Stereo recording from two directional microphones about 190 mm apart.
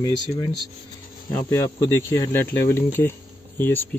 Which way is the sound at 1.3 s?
10° left (ahead or behind).